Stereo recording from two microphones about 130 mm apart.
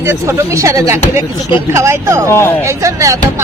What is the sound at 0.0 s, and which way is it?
Speech, 20° right (ahead or behind).